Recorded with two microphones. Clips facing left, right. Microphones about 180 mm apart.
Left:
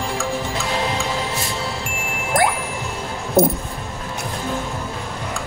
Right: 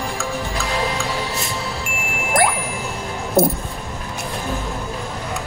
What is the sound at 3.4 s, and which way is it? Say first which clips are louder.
Music: left 1 dB; centre (ahead or behind).